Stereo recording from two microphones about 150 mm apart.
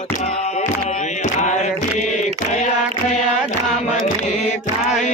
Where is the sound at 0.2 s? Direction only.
45° left (ahead or behind).